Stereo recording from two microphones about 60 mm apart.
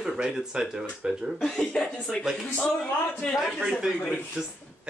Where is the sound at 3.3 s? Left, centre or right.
Centre.